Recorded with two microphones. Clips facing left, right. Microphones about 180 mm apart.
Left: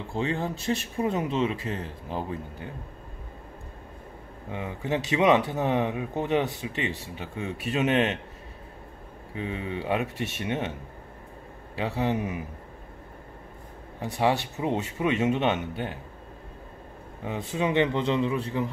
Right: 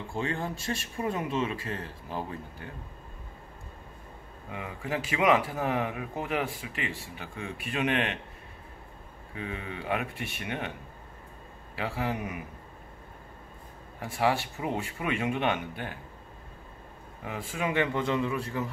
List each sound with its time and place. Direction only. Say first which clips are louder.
0.1 s speech: left 4 dB; 20° left (ahead or behind)
4.5 s speech: left 5 dB; 25° left (ahead or behind)
9.3 s speech: left 5 dB; 25° left (ahead or behind)
11.7 s speech: left 5 dB; 25° left (ahead or behind)
14.0 s speech: left 2 dB; 20° left (ahead or behind)
17.2 s speech: left 5 dB; 25° left (ahead or behind)